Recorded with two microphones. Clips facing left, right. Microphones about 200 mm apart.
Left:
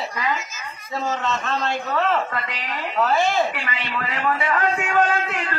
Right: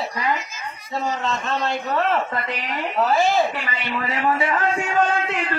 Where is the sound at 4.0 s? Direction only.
25° right (ahead or behind).